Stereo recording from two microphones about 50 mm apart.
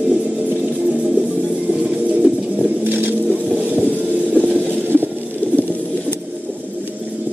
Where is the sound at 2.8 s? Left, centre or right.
Right.